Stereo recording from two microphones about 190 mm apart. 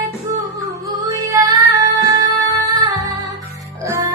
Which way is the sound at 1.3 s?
20° right (ahead or behind).